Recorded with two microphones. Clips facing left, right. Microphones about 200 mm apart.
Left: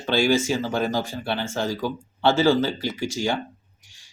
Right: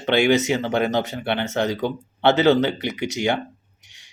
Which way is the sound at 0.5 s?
65° right (ahead or behind).